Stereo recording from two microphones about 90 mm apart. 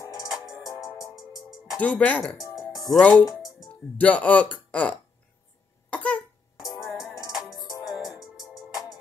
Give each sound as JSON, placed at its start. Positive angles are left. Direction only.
{"t": 0.0, "sound": "music", "side_deg": 40}
{"t": 0.3, "sound": "music", "side_deg": 0}
{"t": 1.8, "sound": "speech", "side_deg": 15}
{"t": 3.4, "sound": "music", "side_deg": 0}
{"t": 4.0, "sound": "speech", "side_deg": 15}
{"t": 5.9, "sound": "cough", "side_deg": 15}
{"t": 6.6, "sound": "music", "side_deg": 0}